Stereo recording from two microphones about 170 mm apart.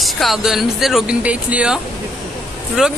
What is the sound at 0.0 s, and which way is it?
Speech, centre (ahead or behind).